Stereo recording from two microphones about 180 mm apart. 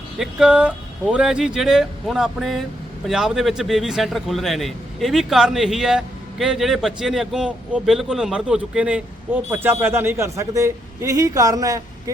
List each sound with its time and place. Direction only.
0.2 s a man's voice: 5° right (ahead or behind)